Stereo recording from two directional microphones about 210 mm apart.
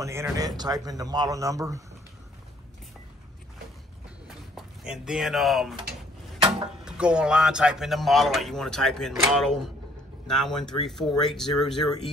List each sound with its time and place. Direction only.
0.0 s speech: 15° right (ahead or behind)
4.6 s speech: 5° right (ahead or behind)
6.8 s a man's voice: 5° right (ahead or behind)